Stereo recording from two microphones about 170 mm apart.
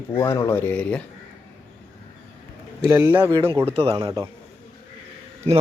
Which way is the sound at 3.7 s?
35° right (ahead or behind).